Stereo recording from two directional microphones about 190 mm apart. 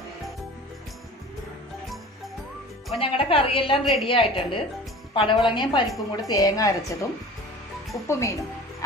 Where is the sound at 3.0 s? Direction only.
30° left (ahead or behind).